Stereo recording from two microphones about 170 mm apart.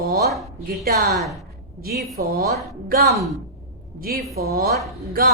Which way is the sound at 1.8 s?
65° right (ahead or behind).